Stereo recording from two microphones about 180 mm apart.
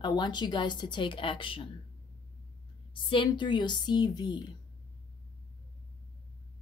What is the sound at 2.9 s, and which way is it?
A woman's voice, 30° left (ahead or behind).